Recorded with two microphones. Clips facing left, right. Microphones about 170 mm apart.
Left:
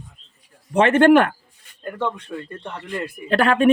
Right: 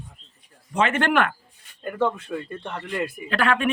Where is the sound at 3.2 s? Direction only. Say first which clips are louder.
Left 6 dB; 35° left (ahead or behind).